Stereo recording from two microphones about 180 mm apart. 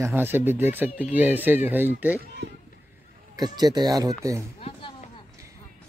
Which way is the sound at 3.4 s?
20° right (ahead or behind).